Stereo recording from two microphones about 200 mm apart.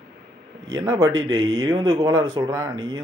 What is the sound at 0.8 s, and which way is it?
Speech, 20° right (ahead or behind).